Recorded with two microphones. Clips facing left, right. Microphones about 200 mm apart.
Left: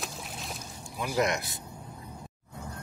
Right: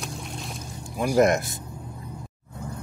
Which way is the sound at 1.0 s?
45° right (ahead or behind).